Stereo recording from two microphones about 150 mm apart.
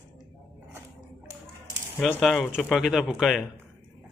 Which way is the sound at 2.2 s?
Centre (ahead or behind).